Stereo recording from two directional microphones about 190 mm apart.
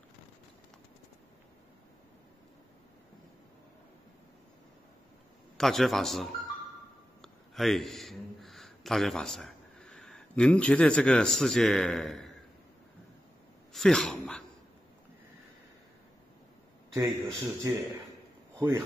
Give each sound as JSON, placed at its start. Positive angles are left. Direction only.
{"t": 5.6, "sound": "a man's voice", "side_deg": 0}
{"t": 13.7, "sound": "a man's voice", "side_deg": 0}
{"t": 16.9, "sound": "speech", "side_deg": -15}